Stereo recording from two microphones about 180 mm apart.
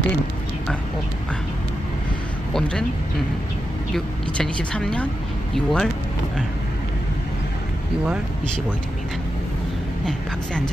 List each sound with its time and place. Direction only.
3.9 s a woman's voice: 5° left (ahead or behind)